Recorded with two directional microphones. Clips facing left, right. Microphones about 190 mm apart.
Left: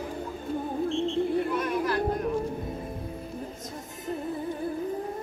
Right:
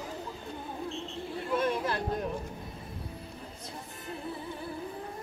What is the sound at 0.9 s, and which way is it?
Music, 35° right (ahead or behind).